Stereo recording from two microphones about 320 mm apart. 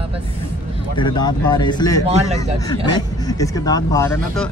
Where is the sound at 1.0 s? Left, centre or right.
Centre.